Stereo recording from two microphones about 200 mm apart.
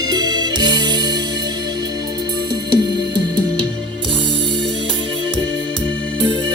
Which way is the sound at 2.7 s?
20° right (ahead or behind).